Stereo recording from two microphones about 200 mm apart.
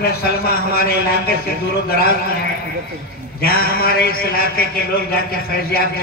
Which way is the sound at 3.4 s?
50° left (ahead or behind).